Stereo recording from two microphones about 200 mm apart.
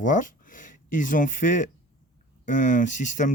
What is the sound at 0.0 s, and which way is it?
Speech, 40° left (ahead or behind).